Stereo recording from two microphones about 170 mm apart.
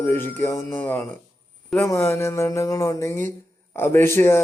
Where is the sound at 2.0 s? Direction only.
15° left (ahead or behind).